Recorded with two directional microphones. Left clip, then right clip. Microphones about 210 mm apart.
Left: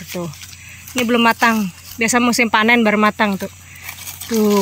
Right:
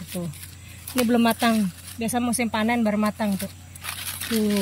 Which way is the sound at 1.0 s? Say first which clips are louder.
Left 8 dB; centre (ahead or behind).